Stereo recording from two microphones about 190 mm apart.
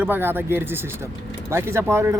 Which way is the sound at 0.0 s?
10° right (ahead or behind).